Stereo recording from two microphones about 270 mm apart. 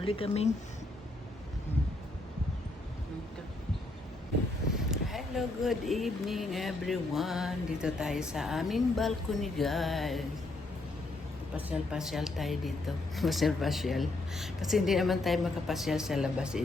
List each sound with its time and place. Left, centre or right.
0.0 s speech: left
4.7 s speech: centre
11.7 s speech: centre